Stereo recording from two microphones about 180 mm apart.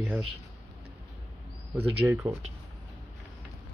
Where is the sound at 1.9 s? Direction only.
15° right (ahead or behind).